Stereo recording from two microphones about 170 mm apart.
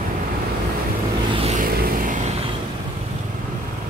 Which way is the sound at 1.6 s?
60° right (ahead or behind).